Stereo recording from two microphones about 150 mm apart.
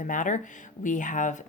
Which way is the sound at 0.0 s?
60° left (ahead or behind).